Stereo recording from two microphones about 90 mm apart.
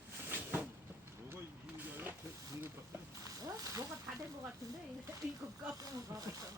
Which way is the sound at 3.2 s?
40° right (ahead or behind).